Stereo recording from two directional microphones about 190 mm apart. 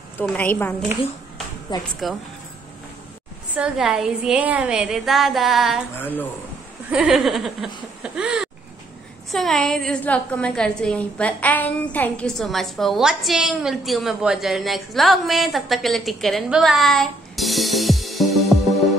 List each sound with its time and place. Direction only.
0.2 s a woman's voice: 10° left (ahead or behind)
1.7 s speech: 25° left (ahead or behind)
3.5 s a woman's voice: 5° right (ahead or behind)
5.9 s a woman's voice: 10° left (ahead or behind)
6.9 s a woman's voice: 5° right (ahead or behind)